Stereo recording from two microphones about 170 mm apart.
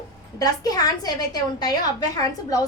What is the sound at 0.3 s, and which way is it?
A woman's voice, 20° left (ahead or behind).